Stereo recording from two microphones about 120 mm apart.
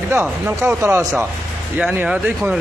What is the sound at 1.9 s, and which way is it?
Speech, 15° right (ahead or behind).